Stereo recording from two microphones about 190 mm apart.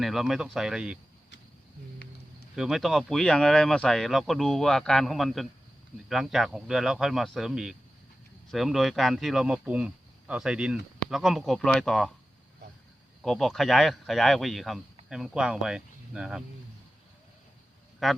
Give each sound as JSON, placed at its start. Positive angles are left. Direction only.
{"t": 0.0, "sound": "speech", "side_deg": 0}
{"t": 2.6, "sound": "speech", "side_deg": 0}
{"t": 13.2, "sound": "speech", "side_deg": 0}
{"t": 18.0, "sound": "speech", "side_deg": 0}